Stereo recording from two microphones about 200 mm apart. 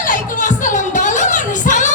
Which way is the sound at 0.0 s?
40° left (ahead or behind).